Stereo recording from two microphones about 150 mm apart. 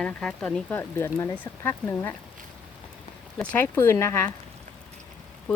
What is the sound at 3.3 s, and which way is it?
Speech, 10° left (ahead or behind).